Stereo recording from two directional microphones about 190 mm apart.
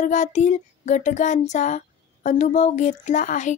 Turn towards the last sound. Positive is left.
turn(degrees=40)  # may be behind; listen again after turning